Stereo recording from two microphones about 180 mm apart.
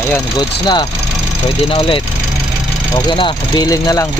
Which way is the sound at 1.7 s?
30° left (ahead or behind).